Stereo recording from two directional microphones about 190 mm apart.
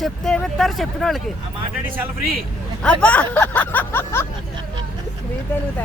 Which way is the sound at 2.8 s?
5° left (ahead or behind).